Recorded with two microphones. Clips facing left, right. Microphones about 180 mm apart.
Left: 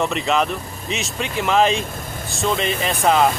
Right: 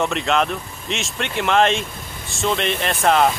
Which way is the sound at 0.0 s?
Centre (ahead or behind).